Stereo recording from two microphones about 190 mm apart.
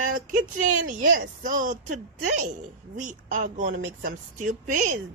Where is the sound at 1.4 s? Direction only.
45° right (ahead or behind).